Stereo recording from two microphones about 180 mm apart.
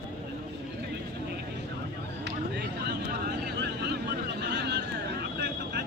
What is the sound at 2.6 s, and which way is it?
Vehicle, 65° right (ahead or behind).